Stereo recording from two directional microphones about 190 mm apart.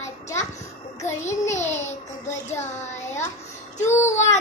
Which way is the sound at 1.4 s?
35° left (ahead or behind).